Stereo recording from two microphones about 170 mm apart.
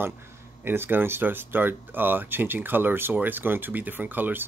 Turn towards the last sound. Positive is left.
turn(degrees=-10)  # may be behind; listen again after turning